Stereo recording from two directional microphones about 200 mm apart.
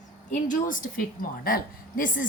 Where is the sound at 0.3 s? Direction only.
40° left (ahead or behind).